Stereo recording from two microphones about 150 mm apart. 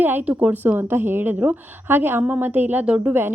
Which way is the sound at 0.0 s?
10° right (ahead or behind).